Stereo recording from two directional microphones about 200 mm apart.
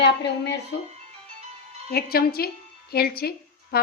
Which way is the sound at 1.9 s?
50° left (ahead or behind).